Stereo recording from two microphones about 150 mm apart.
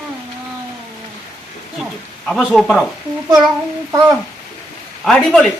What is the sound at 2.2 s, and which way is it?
Speech, 5° left (ahead or behind).